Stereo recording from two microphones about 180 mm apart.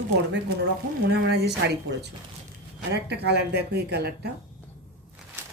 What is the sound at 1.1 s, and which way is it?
A woman's voice, 65° right (ahead or behind).